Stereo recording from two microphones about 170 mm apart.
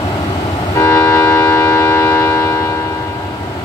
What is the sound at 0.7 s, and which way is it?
Vehicle, 10° left (ahead or behind).